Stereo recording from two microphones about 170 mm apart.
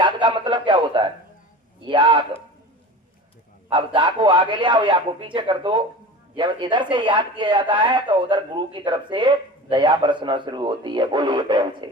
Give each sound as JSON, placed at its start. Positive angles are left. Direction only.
{"t": 0.0, "sound": "a sound", "side_deg": -25}
{"t": 1.8, "sound": "speech", "side_deg": -25}
{"t": 3.7, "sound": "speech", "side_deg": -30}